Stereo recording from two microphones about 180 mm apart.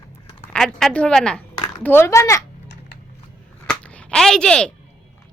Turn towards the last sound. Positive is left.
turn(degrees=5)  # may be behind; listen again after turning